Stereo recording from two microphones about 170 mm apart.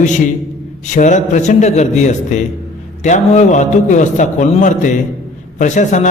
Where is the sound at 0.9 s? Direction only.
45° left (ahead or behind).